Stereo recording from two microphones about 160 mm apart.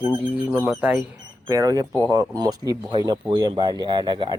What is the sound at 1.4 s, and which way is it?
Speech, 20° right (ahead or behind).